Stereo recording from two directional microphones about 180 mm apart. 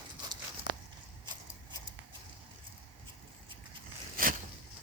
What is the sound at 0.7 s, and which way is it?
Walk, 75° left (ahead or behind).